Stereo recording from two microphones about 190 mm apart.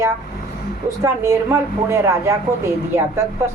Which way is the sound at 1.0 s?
15° right (ahead or behind).